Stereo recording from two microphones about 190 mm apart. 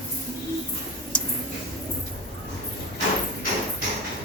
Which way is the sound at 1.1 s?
5° left (ahead or behind).